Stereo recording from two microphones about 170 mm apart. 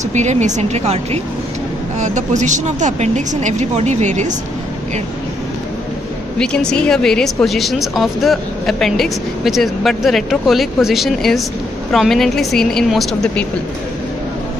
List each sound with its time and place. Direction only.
0.1 s a woman's voice: 45° right (ahead or behind)
6.3 s speech: 5° left (ahead or behind)